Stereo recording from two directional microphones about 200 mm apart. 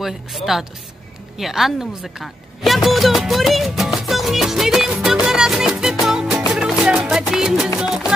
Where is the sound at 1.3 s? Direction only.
Centre (ahead or behind).